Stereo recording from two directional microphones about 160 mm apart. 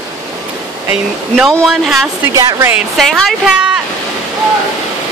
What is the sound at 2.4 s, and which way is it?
Speech, 20° right (ahead or behind).